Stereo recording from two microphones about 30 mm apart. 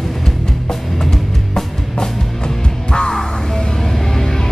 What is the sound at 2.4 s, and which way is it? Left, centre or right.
Music, left.